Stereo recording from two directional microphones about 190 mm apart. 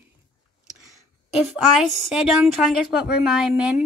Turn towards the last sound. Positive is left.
turn(degrees=-5)  # may be behind; listen again after turning